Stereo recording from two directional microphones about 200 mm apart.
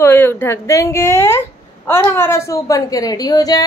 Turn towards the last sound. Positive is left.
turn(degrees=20)  # may be behind; listen again after turning